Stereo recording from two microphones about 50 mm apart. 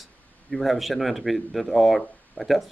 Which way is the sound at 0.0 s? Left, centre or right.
Centre.